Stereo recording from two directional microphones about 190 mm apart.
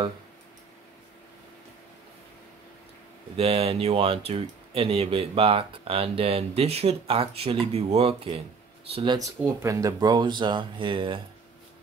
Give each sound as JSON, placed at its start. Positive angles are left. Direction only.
{"t": 3.3, "sound": "speech", "side_deg": -30}